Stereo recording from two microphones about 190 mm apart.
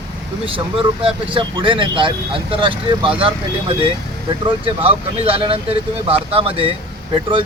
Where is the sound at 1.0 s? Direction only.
25° right (ahead or behind).